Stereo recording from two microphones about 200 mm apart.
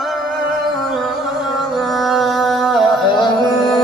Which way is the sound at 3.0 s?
20° left (ahead or behind).